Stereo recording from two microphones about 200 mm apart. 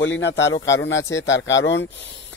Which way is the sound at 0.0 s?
65° left (ahead or behind).